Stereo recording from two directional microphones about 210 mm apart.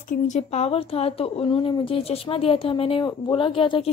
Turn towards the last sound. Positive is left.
turn(degrees=25)  # may be behind; listen again after turning